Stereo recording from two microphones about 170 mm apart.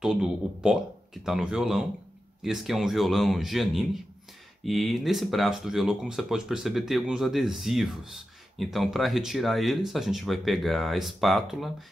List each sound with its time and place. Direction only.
0.0 s speech: 5° right (ahead or behind)